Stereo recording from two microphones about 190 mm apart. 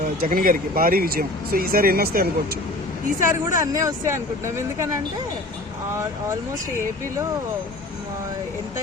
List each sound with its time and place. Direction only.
0.2 s speech: 50° right (ahead or behind)
3.2 s speech: 15° right (ahead or behind)